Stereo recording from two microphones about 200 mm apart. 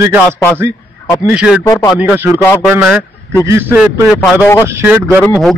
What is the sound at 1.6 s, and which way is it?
Speech, 15° left (ahead or behind).